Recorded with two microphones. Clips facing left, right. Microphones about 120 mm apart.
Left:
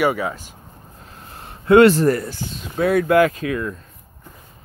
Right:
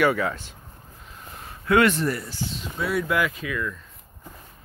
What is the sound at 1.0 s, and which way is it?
Speech, 35° left (ahead or behind).